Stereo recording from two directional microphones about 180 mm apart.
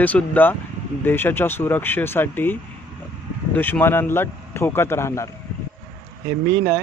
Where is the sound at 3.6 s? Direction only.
10° left (ahead or behind).